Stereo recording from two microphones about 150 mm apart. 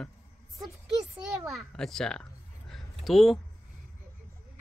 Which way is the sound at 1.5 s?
5° left (ahead or behind).